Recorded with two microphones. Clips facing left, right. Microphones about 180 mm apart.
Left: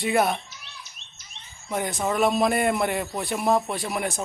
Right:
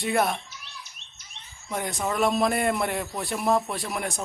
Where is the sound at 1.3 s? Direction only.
15° left (ahead or behind).